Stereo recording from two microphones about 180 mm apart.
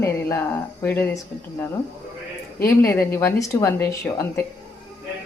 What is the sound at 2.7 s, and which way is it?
A woman's voice, 15° left (ahead or behind).